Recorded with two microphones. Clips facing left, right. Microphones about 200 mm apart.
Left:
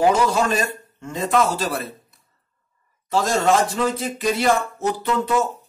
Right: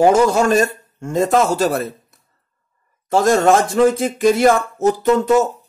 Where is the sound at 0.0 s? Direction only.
45° right (ahead or behind).